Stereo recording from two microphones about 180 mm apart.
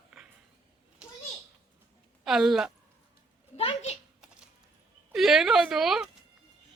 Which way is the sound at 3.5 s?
35° left (ahead or behind).